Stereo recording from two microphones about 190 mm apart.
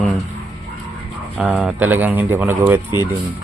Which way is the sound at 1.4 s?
5° right (ahead or behind).